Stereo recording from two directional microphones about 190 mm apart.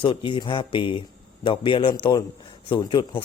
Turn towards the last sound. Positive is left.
turn(degrees=25)  # may be behind; listen again after turning